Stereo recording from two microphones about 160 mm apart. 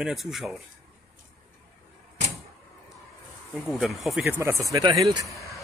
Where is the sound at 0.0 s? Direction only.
Centre (ahead or behind).